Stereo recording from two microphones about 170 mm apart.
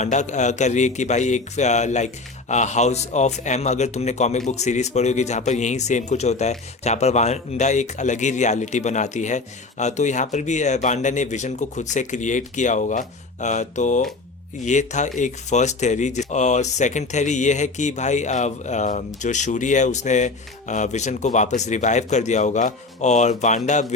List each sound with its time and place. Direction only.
0.0 s speech: 45° left (ahead or behind)